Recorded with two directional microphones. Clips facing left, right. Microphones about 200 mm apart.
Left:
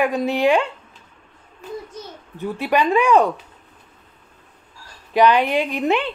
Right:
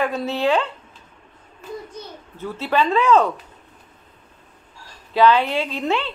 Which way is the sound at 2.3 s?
15° left (ahead or behind).